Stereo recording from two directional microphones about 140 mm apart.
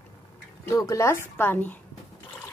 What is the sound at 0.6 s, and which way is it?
Speech, 20° left (ahead or behind).